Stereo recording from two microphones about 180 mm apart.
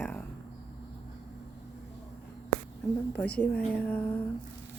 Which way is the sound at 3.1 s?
5° left (ahead or behind).